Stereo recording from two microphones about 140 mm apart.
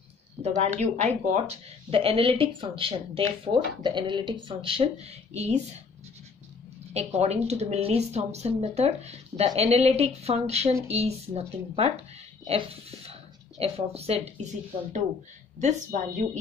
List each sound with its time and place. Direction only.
0.4 s speech: 55° right (ahead or behind)
6.9 s speech: 50° right (ahead or behind)